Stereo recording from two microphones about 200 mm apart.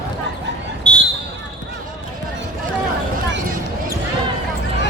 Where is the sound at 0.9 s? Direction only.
20° right (ahead or behind).